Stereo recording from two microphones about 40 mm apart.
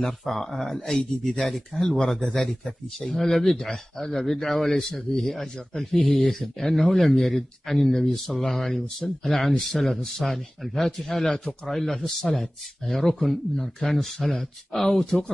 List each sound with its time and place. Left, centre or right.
0.0 s speech: centre
3.1 s speech: centre
14.7 s speech: centre